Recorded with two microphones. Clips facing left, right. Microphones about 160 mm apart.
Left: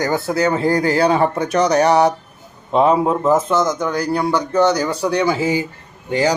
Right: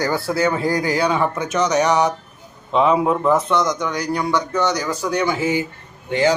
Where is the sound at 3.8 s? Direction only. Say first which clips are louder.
Left 3 dB; 35° left (ahead or behind).